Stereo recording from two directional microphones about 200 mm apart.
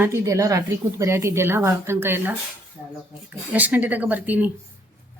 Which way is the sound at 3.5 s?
10° right (ahead or behind).